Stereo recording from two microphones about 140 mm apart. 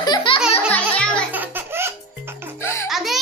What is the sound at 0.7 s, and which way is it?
Music, 10° left (ahead or behind).